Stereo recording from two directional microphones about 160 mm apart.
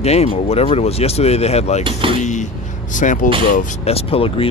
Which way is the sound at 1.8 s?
35° right (ahead or behind).